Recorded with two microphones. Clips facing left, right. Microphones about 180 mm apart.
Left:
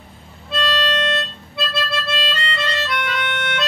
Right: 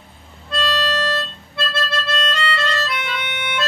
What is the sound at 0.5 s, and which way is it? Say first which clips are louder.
Harmonica: even; 10° right (ahead or behind).